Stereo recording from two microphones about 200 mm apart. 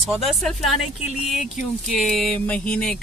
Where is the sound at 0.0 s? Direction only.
Centre (ahead or behind).